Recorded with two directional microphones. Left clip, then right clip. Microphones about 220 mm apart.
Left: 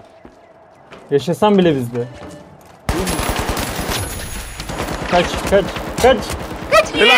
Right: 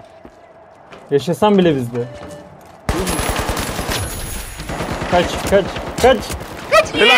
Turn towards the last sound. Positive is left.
turn(degrees=0)  # may be behind; listen again after turning